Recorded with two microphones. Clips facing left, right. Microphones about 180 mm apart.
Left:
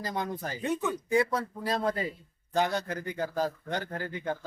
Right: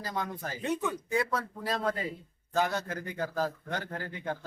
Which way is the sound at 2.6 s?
15° left (ahead or behind).